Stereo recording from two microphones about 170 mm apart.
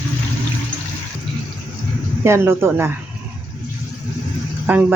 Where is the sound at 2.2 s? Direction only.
15° right (ahead or behind).